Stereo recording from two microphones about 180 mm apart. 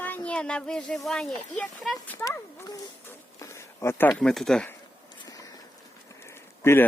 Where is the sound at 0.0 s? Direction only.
10° left (ahead or behind).